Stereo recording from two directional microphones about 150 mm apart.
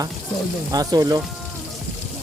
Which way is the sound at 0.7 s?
25° right (ahead or behind).